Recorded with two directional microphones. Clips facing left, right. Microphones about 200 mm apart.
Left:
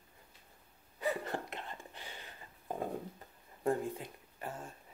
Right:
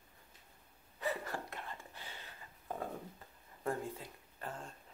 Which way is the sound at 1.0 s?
20° left (ahead or behind).